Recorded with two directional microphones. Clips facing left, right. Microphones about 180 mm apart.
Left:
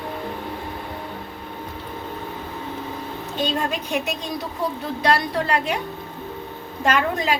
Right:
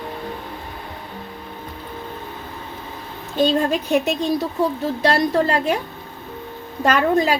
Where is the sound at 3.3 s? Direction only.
40° right (ahead or behind).